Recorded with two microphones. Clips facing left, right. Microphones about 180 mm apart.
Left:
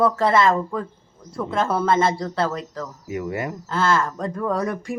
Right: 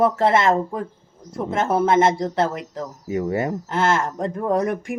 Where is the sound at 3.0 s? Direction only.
30° right (ahead or behind).